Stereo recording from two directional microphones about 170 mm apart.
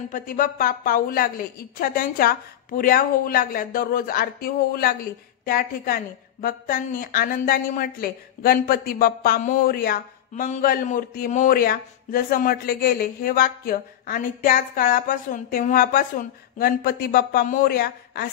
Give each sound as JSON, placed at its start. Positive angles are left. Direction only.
{"t": 0.1, "sound": "a woman's voice", "side_deg": 55}